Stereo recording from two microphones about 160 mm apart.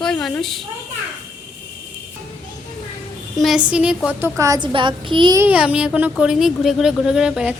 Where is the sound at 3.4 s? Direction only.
Centre (ahead or behind); by 5.3 s 30° right (ahead or behind).